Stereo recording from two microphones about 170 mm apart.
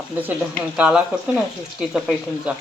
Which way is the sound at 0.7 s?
5° right (ahead or behind).